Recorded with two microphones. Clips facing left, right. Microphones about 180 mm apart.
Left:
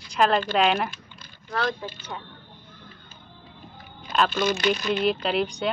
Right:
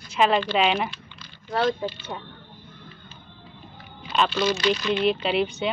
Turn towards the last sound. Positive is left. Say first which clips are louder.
# right 1 dB
turn(degrees=-5)  # may be behind; listen again after turning